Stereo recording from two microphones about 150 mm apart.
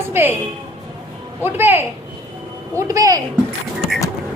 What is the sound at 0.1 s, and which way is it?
Speech, 15° right (ahead or behind).